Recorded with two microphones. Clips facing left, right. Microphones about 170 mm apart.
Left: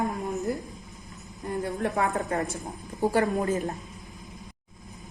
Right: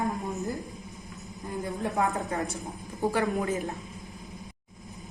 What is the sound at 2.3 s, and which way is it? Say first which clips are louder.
Speech: left 3 dB; 60° left (ahead or behind).